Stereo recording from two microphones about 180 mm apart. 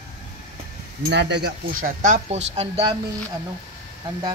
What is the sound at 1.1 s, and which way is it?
Speech, 70° right (ahead or behind).